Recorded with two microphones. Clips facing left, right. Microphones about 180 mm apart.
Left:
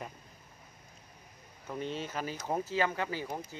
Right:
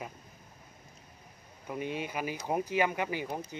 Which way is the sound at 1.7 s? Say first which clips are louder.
Right 1 dB; 10° right (ahead or behind).